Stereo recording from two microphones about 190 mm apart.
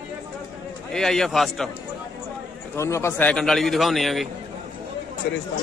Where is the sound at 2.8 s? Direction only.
15° left (ahead or behind).